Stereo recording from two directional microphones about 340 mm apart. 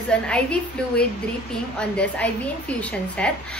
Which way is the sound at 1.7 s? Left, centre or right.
Centre.